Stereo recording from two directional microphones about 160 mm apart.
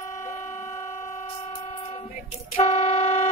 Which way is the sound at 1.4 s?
40° left (ahead or behind).